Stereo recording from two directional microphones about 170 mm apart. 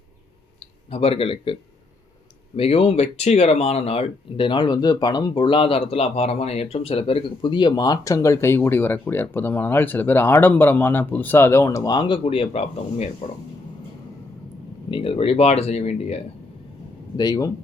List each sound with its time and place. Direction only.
0.9 s speech: 35° left (ahead or behind)
2.6 s speech: 35° left (ahead or behind)
14.8 s speech: 30° left (ahead or behind)
17.2 s speech: 25° left (ahead or behind)